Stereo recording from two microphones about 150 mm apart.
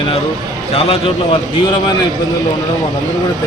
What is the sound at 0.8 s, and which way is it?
Speech, 40° left (ahead or behind).